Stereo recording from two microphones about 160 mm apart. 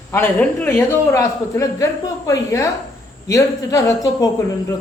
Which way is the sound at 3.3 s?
20° left (ahead or behind).